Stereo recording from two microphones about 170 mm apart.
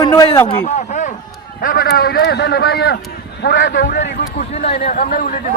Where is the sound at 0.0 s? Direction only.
25° left (ahead or behind).